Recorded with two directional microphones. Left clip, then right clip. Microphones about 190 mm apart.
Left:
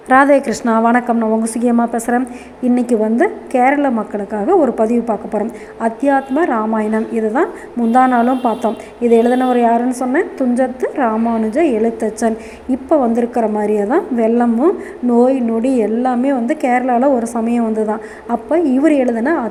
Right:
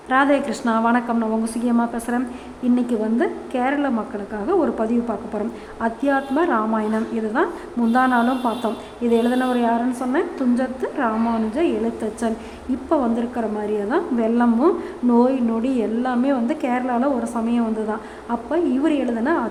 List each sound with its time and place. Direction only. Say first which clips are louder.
0.1 s a woman's voice: left 8 dB; 30° left (ahead or behind)